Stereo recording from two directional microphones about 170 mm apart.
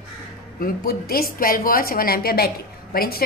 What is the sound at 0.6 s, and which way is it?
Speech, 65° left (ahead or behind).